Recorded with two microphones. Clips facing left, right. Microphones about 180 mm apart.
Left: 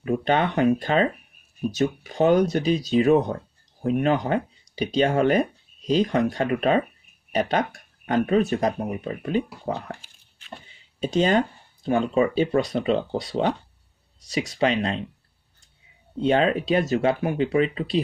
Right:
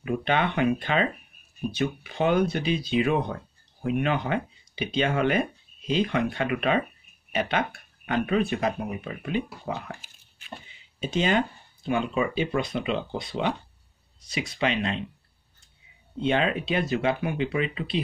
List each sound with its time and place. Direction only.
0.0 s speech: 40° left (ahead or behind)
11.0 s speech: 40° left (ahead or behind)
16.2 s speech: 40° left (ahead or behind)